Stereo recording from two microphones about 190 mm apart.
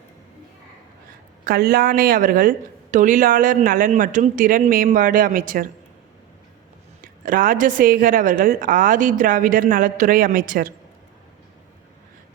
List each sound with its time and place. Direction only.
1.5 s a woman's voice: 50° right (ahead or behind)
7.0 s a woman's voice: 45° right (ahead or behind)